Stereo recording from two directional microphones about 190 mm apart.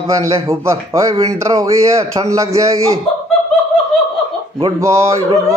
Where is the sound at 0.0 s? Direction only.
15° right (ahead or behind).